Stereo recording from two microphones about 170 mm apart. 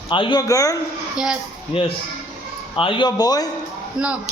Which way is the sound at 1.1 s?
5° right (ahead or behind).